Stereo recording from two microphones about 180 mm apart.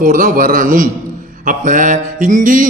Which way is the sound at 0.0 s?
50° right (ahead or behind).